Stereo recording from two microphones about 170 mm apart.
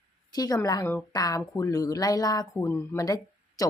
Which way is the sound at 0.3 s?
20° left (ahead or behind).